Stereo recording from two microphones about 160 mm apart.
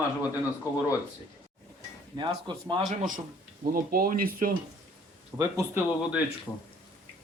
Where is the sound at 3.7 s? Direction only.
65° right (ahead or behind).